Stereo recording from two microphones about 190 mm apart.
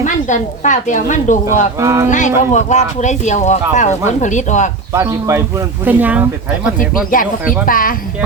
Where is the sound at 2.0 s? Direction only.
40° left (ahead or behind).